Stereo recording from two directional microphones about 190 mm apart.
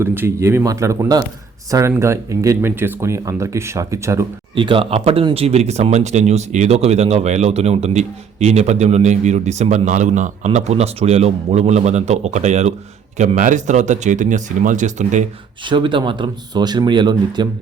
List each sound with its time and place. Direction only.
0.0 s a man's voice: 10° right (ahead or behind); by 15.3 s 40° right (ahead or behind)
15.6 s speech: 25° right (ahead or behind)